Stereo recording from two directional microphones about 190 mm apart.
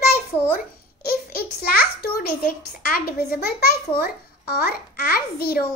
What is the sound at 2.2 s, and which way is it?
A child's voice, 50° left (ahead or behind).